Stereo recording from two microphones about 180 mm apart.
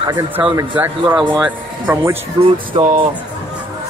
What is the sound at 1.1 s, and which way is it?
Speech, 25° right (ahead or behind).